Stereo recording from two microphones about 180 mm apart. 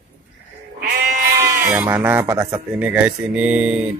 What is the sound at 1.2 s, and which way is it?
Sheep, 15° right (ahead or behind).